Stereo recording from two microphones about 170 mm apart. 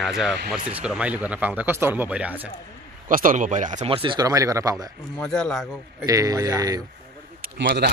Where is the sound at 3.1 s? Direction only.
55° right (ahead or behind); by 4.9 s 20° right (ahead or behind).